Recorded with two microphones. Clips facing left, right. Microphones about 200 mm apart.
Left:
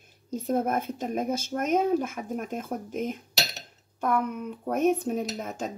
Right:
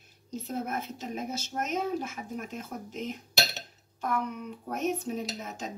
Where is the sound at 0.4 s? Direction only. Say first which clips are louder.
Left 7 dB; 55° left (ahead or behind).